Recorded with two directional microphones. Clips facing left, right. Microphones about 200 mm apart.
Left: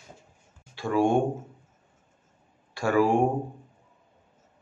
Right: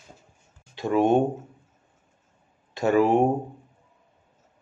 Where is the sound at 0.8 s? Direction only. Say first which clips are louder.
Right 3 dB; 20° right (ahead or behind).